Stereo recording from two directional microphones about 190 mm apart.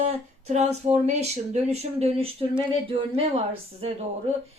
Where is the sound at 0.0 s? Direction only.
35° right (ahead or behind).